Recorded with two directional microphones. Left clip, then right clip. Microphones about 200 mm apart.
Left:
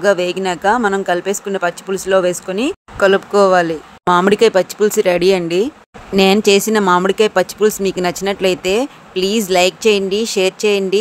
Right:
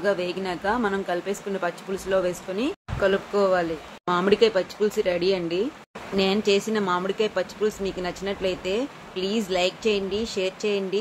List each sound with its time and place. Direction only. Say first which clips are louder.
0.0 s speech: left 11 dB; 55° left (ahead or behind)